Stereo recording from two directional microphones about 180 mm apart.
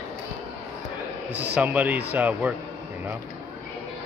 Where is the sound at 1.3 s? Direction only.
10° right (ahead or behind).